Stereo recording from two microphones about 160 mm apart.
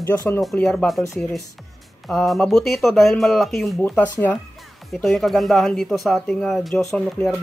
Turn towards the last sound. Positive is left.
turn(degrees=5)  # may be behind; listen again after turning